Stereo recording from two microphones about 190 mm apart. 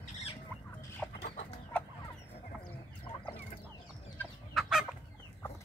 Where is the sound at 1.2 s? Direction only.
45° left (ahead or behind).